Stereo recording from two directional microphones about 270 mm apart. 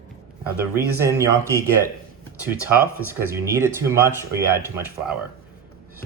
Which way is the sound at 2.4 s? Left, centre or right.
Centre.